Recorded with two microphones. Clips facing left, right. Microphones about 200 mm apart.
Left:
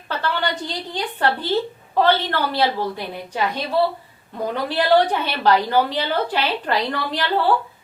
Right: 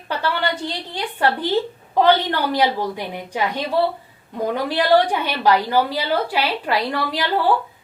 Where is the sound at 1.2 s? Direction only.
15° right (ahead or behind).